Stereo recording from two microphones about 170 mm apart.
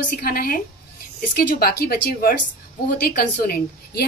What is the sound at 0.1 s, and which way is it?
A woman's voice, 60° left (ahead or behind).